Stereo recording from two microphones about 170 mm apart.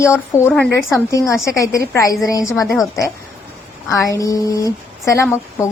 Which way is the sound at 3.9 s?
20° left (ahead or behind).